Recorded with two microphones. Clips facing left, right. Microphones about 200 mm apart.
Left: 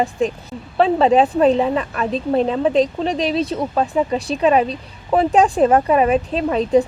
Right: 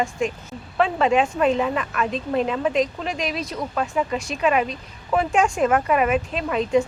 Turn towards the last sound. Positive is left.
turn(degrees=35)  # may be behind; listen again after turning